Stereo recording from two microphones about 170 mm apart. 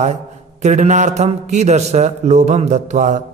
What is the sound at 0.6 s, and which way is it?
A man's voice, 45° right (ahead or behind).